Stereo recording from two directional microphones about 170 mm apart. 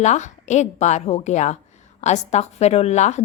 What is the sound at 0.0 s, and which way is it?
A woman's voice, 45° left (ahead or behind).